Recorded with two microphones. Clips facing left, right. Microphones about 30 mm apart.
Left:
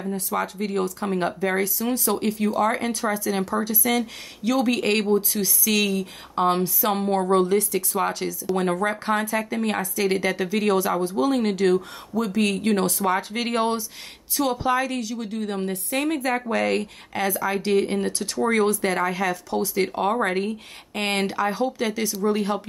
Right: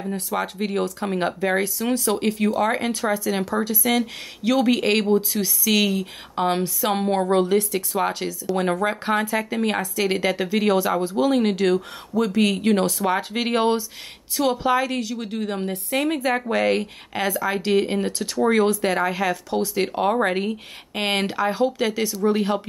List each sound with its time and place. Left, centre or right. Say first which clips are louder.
0.1 s speech: even; centre